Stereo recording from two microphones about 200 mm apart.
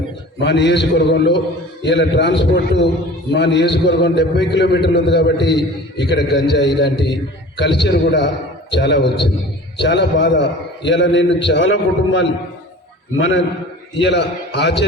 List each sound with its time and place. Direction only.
0.3 s a man's voice: 60° left (ahead or behind); by 13.4 s 75° left (ahead or behind)
14.0 s a man's voice: 60° left (ahead or behind)